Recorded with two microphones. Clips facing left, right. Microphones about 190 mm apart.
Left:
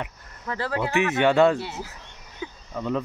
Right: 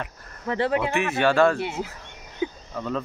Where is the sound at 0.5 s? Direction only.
25° right (ahead or behind).